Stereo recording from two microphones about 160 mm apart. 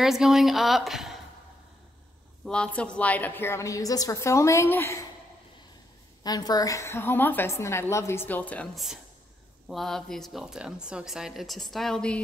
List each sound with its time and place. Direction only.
0.0 s a woman's voice: centre (ahead or behind)
2.4 s a woman's voice: 5° left (ahead or behind)
6.2 s a woman's voice: 25° left (ahead or behind); by 12.2 s 5° left (ahead or behind)